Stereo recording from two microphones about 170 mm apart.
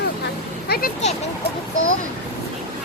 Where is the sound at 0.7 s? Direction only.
65° left (ahead or behind).